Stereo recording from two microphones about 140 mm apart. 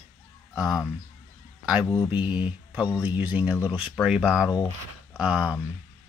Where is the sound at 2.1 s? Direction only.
10° right (ahead or behind).